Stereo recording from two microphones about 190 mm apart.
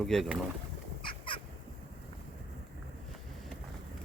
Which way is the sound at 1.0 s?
25° left (ahead or behind).